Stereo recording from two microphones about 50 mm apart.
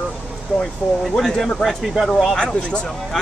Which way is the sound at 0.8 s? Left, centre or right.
Centre.